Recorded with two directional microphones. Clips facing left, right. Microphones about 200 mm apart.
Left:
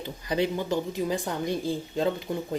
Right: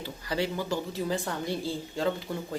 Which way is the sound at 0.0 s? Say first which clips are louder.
Left 4 dB; 20° left (ahead or behind).